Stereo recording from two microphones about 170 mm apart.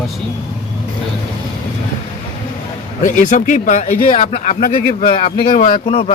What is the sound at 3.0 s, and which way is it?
Speech, 50° left (ahead or behind).